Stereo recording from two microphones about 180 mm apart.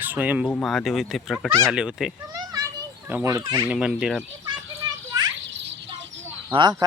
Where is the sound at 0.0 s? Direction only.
10° right (ahead or behind).